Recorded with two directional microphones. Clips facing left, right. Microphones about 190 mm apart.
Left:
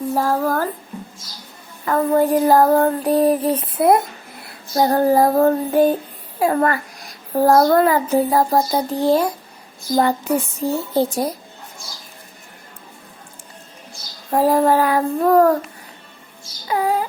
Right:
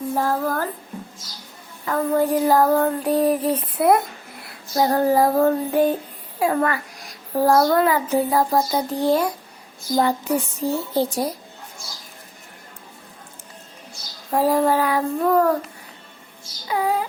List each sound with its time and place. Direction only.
0.1 s music: 90° left
0.3 s child singing: 45° left (ahead or behind)
1.8 s child singing: 50° left (ahead or behind); by 4.0 s 25° left (ahead or behind)
4.7 s child singing: 40° left (ahead or behind)
9.9 s child singing: 50° left (ahead or behind)
14.3 s child singing: 45° left (ahead or behind)
16.6 s child singing: 45° left (ahead or behind)